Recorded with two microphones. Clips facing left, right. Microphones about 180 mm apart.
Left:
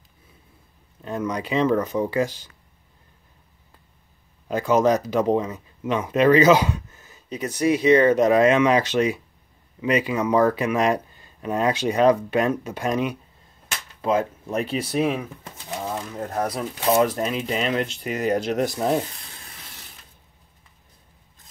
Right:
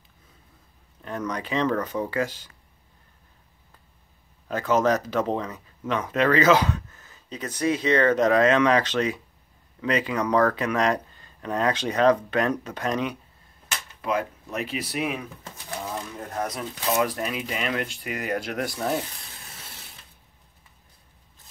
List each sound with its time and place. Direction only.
1.0 s speech: 15° left (ahead or behind)
4.5 s speech: 15° left (ahead or behind)
14.0 s speech: 30° left (ahead or behind)